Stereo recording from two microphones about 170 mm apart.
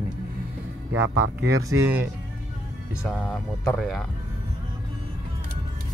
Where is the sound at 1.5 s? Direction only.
20° right (ahead or behind).